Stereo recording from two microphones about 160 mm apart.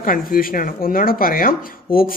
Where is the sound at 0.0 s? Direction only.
60° left (ahead or behind).